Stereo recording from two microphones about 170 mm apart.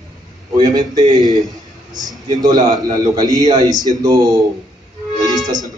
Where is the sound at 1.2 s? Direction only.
25° right (ahead or behind).